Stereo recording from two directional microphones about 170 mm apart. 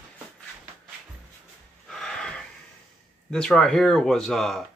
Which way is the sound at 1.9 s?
5° left (ahead or behind).